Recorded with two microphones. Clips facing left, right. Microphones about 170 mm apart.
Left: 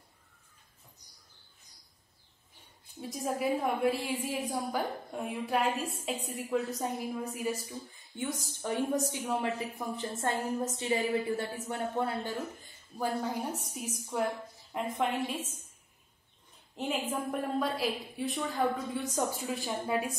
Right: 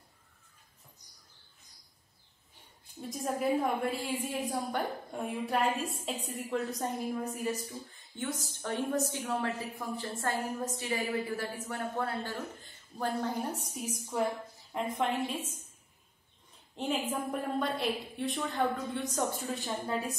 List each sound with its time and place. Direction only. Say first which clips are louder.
3.0 s a woman's voice: even; centre (ahead or behind)
16.7 s a woman's voice: even; centre (ahead or behind)